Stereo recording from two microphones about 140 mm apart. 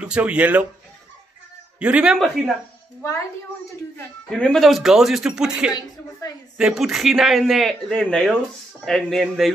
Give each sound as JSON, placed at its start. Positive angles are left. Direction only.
{"t": 0.0, "sound": "speech", "side_deg": -10}
{"t": 1.8, "sound": "a man's voice", "side_deg": -10}
{"t": 4.3, "sound": "a man's voice", "side_deg": 5}
{"t": 5.7, "sound": "speech", "side_deg": 30}
{"t": 6.6, "sound": "a man's voice", "side_deg": 0}